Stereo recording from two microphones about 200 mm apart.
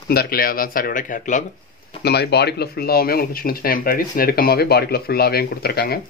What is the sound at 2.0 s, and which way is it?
Speech, 55° left (ahead or behind).